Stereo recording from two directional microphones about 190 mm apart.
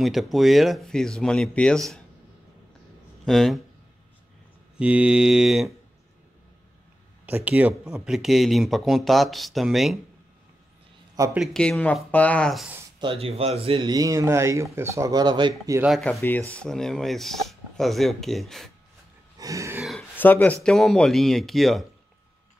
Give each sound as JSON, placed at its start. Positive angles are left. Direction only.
{"t": 0.0, "sound": "speech", "side_deg": 0}
{"t": 3.3, "sound": "speech", "side_deg": 0}
{"t": 4.7, "sound": "speech", "side_deg": -5}
{"t": 7.2, "sound": "speech", "side_deg": -10}
{"t": 11.3, "sound": "speech", "side_deg": 0}
{"t": 13.0, "sound": "speech", "side_deg": -30}
{"t": 15.9, "sound": "speech", "side_deg": 0}
{"t": 19.3, "sound": "throat clearing", "side_deg": -15}
{"t": 19.8, "sound": "speech", "side_deg": 0}